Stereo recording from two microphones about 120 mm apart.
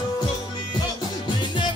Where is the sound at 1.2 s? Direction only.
40° left (ahead or behind).